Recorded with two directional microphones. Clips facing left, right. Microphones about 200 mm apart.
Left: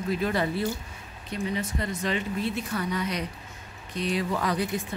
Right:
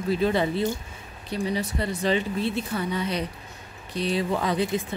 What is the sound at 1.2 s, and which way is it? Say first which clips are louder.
Speech: right 3 dB; 35° right (ahead or behind).